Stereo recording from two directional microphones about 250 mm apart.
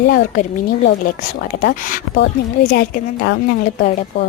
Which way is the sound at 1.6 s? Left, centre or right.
Left.